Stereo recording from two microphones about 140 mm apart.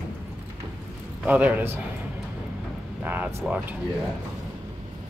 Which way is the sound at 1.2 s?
10° right (ahead or behind).